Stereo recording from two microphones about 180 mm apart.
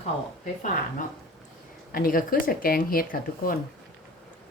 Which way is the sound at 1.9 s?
50° left (ahead or behind).